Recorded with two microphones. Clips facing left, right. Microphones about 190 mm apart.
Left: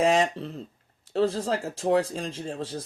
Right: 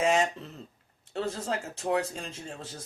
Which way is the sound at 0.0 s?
35° left (ahead or behind).